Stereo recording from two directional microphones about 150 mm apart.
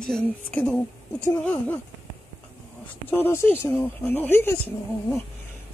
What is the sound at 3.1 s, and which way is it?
Speech, 15° left (ahead or behind).